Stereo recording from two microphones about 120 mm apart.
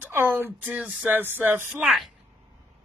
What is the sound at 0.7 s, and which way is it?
A man's voice, 5° right (ahead or behind).